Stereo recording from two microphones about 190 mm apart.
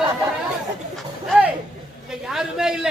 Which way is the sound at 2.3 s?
Centre (ahead or behind).